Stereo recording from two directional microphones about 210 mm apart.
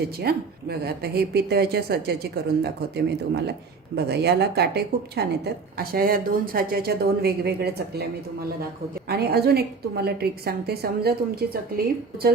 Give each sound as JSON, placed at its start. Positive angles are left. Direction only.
{"t": 0.2, "sound": "speech", "side_deg": -50}
{"t": 9.0, "sound": "speech", "side_deg": -50}